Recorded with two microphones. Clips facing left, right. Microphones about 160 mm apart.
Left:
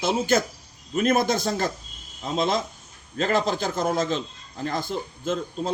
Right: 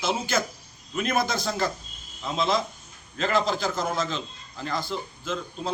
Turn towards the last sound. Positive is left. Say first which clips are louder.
# left 4 dB
turn(degrees=50)  # may be behind; listen again after turning